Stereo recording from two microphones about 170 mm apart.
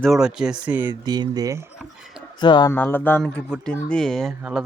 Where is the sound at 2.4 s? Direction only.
25° left (ahead or behind).